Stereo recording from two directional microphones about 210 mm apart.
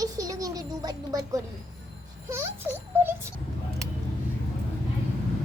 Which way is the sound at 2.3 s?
10° right (ahead or behind).